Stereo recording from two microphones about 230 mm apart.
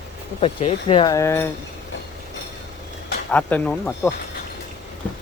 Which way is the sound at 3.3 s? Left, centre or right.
Centre.